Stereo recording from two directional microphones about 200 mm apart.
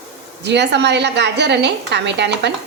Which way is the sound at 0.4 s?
60° right (ahead or behind).